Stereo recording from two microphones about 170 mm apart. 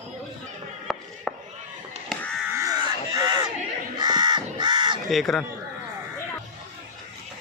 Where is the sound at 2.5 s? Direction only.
20° right (ahead or behind).